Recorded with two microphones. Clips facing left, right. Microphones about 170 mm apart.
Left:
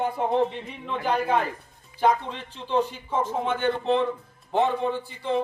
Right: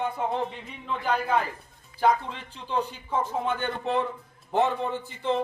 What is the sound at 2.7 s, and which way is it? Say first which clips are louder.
Speech: left 4 dB; 20° left (ahead or behind).